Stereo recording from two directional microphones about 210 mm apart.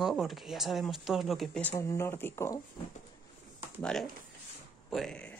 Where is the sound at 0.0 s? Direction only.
Centre (ahead or behind).